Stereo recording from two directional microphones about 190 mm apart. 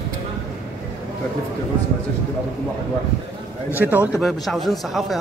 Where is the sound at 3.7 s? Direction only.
10° right (ahead or behind).